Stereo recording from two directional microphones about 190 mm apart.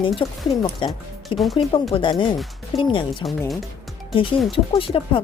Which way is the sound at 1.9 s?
25° left (ahead or behind).